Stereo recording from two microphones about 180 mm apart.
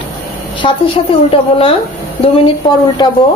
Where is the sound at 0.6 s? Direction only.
30° left (ahead or behind).